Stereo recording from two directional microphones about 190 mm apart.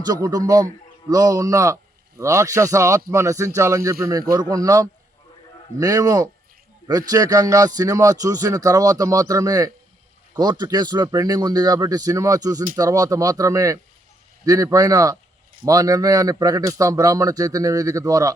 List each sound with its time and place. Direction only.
0.0 s a man's voice: 20° right (ahead or behind)